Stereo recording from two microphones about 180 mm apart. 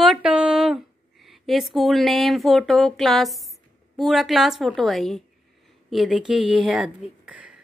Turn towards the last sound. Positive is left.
turn(degrees=-5)  # may be behind; listen again after turning